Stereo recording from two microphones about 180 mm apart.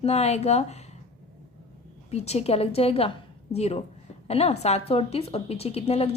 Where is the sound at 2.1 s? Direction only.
35° left (ahead or behind).